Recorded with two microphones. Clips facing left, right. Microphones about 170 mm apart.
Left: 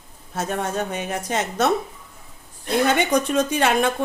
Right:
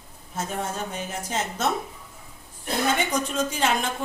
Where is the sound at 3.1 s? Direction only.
65° left (ahead or behind).